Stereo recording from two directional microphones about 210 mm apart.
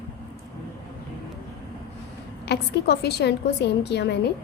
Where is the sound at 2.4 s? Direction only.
50° left (ahead or behind).